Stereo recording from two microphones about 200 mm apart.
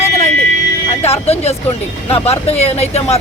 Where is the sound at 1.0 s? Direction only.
30° left (ahead or behind).